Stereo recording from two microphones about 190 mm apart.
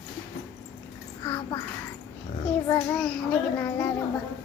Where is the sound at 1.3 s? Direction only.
15° left (ahead or behind).